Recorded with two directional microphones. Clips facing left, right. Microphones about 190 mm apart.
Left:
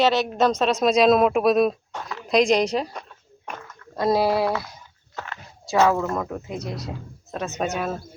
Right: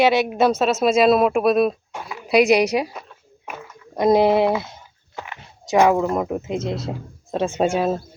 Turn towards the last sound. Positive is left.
turn(degrees=-30)  # may be behind; listen again after turning